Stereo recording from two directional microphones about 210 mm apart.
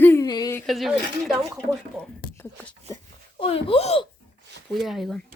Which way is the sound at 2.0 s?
10° left (ahead or behind).